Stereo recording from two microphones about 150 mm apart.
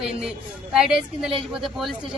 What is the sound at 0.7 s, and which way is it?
Speech, 5° right (ahead or behind).